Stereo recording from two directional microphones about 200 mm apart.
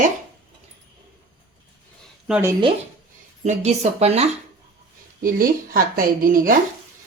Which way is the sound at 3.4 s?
35° right (ahead or behind).